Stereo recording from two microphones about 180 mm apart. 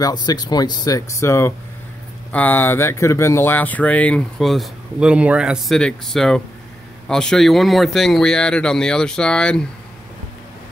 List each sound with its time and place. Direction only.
0.0 s speech: 20° left (ahead or behind); by 9.7 s 5° left (ahead or behind)